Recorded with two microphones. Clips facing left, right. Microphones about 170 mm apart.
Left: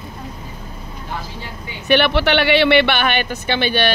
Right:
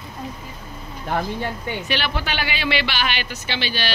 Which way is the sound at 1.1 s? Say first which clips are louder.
Right 7 dB; 55° right (ahead or behind).